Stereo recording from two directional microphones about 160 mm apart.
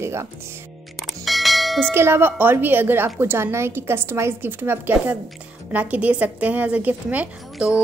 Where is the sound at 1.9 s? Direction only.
15° right (ahead or behind).